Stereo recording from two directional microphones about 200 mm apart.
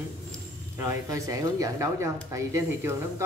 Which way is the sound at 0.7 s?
15° right (ahead or behind).